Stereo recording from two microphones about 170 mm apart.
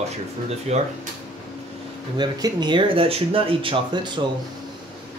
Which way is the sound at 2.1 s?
25° right (ahead or behind).